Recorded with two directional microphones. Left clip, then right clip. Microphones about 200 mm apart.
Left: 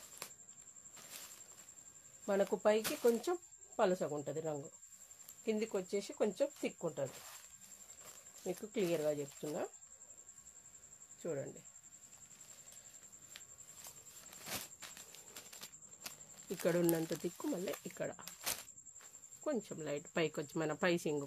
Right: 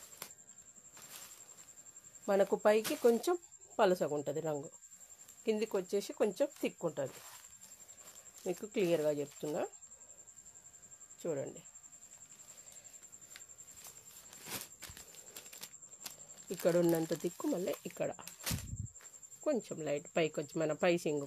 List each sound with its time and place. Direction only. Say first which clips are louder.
0.2 s a sound: even; 5° left (ahead or behind)
2.2 s speech: right 4 dB; 40° right (ahead or behind)
8.7 s speech: right 4 dB; 40° right (ahead or behind)
11.2 s speech: right 3 dB; 50° right (ahead or behind)
14.8 s horse: right 1 dB; 20° right (ahead or behind)
16.6 s speech: right 4 dB; 15° right (ahead or behind)
19.4 s speech: right 5 dB; 20° right (ahead or behind)